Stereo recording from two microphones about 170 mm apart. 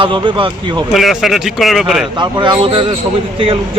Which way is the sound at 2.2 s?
25° right (ahead or behind).